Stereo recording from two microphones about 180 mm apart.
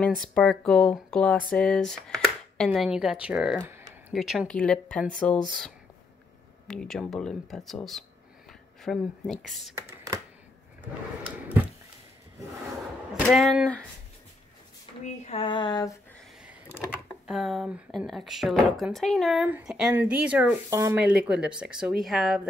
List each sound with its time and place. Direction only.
0.3 s speech: 5° left (ahead or behind)
6.7 s speech: 5° left (ahead or behind)
9.8 s a sound: 15° right (ahead or behind)
13.1 s speech: centre (ahead or behind)
15.2 s speech: 30° left (ahead or behind)
16.9 s speech: centre (ahead or behind)